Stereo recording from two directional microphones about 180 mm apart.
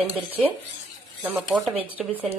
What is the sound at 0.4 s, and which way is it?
Speech, 5° right (ahead or behind).